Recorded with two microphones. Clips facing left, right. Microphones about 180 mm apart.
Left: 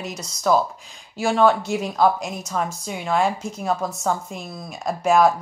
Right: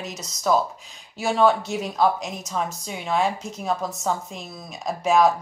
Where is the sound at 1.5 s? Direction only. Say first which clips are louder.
Left 2 dB; centre (ahead or behind).